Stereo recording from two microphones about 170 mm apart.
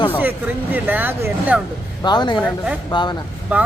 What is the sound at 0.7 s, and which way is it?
Speech, 10° right (ahead or behind).